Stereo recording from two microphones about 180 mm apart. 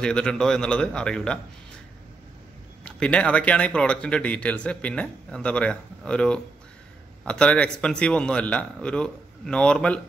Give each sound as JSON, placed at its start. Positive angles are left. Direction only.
{"t": 0.0, "sound": "speech", "side_deg": 5}
{"t": 2.8, "sound": "speech", "side_deg": 5}